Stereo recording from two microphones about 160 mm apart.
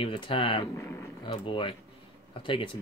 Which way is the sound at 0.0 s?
35° left (ahead or behind).